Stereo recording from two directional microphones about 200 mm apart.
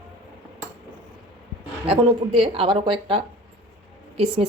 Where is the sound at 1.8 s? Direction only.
30° right (ahead or behind).